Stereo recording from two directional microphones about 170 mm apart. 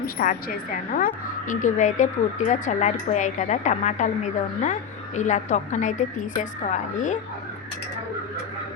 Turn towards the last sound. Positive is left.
turn(degrees=45)  # may be behind; listen again after turning